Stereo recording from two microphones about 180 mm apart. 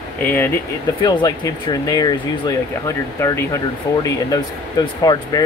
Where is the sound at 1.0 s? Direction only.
20° left (ahead or behind).